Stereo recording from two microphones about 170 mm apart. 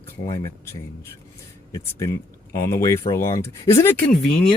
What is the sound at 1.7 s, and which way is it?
Speech, 15° left (ahead or behind).